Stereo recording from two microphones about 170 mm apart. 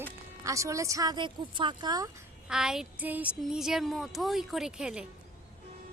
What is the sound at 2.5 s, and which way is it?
A woman's voice, 5° right (ahead or behind).